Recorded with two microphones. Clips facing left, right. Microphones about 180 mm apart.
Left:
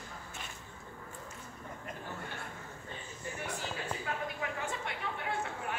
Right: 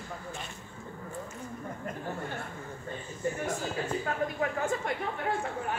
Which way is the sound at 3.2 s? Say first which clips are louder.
Right 8 dB; 45° right (ahead or behind).